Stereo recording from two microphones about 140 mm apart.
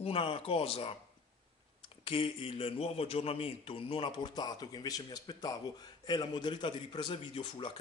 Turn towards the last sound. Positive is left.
turn(degrees=35)  # may be behind; listen again after turning